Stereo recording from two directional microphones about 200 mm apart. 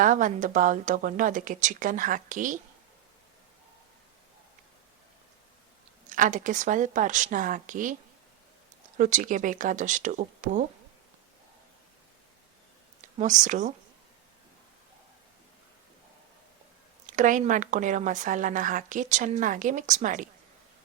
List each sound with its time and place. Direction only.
0.0 s speech: 40° right (ahead or behind)
6.1 s speech: 40° right (ahead or behind)
9.0 s speech: 40° right (ahead or behind)
13.0 s speech: 40° right (ahead or behind)
17.1 s speech: 40° right (ahead or behind)